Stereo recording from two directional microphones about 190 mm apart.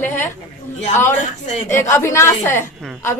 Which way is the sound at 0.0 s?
10° left (ahead or behind).